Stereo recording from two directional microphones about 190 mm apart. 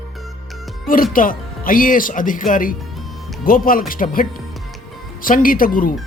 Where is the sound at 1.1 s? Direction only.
45° left (ahead or behind).